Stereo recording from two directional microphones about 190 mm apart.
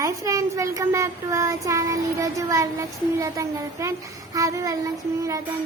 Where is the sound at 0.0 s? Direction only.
15° right (ahead or behind).